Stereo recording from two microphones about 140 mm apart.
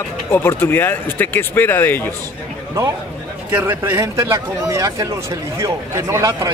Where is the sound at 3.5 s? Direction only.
15° right (ahead or behind).